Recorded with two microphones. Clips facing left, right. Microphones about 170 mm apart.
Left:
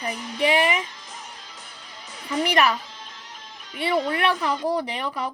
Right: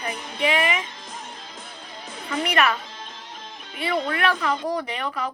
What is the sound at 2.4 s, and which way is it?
Speech, 30° left (ahead or behind).